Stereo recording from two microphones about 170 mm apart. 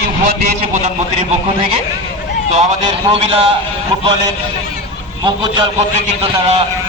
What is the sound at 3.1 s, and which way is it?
Speech, 35° right (ahead or behind).